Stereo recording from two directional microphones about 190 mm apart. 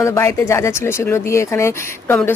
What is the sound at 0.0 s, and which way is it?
A woman's voice, 15° left (ahead or behind).